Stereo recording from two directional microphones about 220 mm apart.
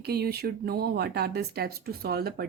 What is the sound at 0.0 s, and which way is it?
Speech, 45° right (ahead or behind).